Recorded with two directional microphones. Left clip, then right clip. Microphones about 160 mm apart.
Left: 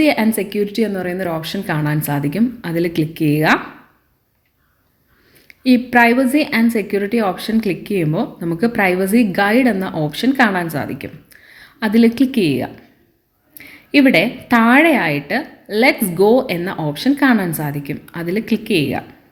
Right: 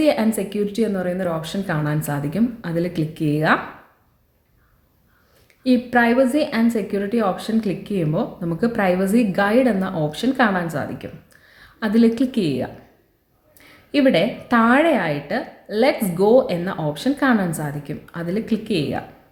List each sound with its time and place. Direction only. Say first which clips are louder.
0.0 s a woman's voice: left 3 dB; 10° left (ahead or behind)
5.5 s a woman's voice: left 4 dB; 10° left (ahead or behind)